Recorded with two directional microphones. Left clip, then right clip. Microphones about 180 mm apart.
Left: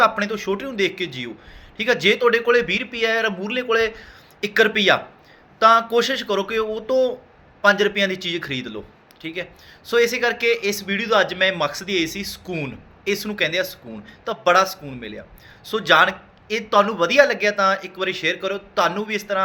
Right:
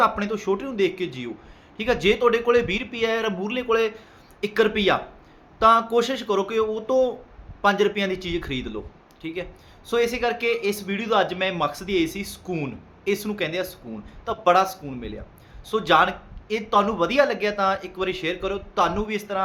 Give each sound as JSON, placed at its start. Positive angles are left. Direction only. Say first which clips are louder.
{"t": 0.0, "sound": "a man's voice", "louder": "left 3 dB", "side_deg": -10}